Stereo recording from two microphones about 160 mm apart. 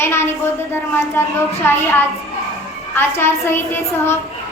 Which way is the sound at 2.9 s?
15° left (ahead or behind).